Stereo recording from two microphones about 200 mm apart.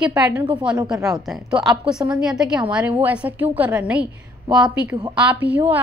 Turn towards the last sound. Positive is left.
turn(degrees=-10)  # may be behind; listen again after turning